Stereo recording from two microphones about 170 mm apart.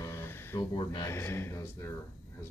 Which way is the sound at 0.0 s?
15° left (ahead or behind).